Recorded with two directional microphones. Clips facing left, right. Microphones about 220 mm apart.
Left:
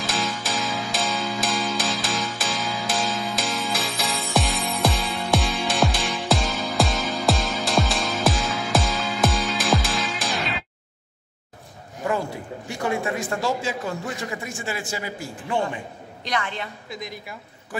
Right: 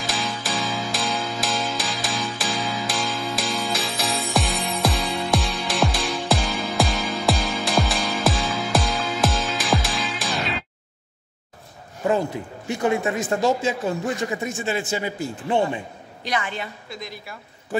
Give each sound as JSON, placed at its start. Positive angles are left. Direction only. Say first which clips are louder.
{"t": 0.0, "sound": "music", "louder": "left 1 dB", "side_deg": 0}
{"t": 12.6, "sound": "a man's voice", "louder": "right 4 dB", "side_deg": -20}
{"t": 16.3, "sound": "a woman's voice", "louder": "right 1 dB", "side_deg": -5}
{"t": 16.9, "sound": "a woman's voice", "louder": "left 1 dB", "side_deg": 15}